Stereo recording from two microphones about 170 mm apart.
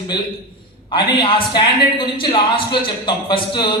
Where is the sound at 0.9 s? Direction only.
30° left (ahead or behind).